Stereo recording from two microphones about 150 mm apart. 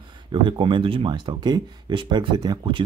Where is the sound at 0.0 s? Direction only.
30° right (ahead or behind).